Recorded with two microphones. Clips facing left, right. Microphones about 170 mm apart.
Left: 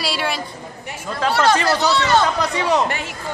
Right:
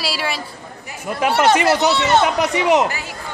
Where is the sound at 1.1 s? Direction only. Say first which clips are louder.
Right 2 dB; 20° right (ahead or behind).